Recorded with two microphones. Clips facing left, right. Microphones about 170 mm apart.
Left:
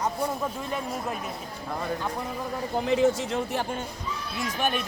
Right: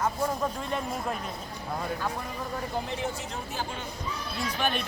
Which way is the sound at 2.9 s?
90° left.